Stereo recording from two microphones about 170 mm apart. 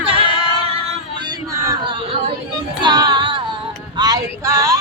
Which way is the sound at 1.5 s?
20° right (ahead or behind).